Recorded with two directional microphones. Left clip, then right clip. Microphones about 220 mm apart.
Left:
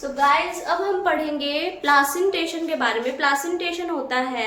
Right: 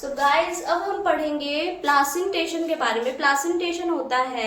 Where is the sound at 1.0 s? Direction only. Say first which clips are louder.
Left 1 dB; 25° left (ahead or behind).